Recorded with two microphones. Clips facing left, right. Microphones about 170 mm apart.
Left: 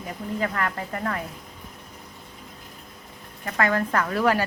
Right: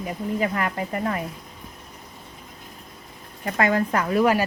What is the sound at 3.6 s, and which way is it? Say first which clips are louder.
Speech: right 2 dB; 15° right (ahead or behind).